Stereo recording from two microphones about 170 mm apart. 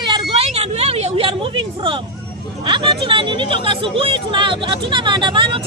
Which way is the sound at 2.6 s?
30° right (ahead or behind).